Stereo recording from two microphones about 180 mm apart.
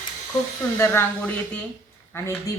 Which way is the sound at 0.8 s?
10° left (ahead or behind).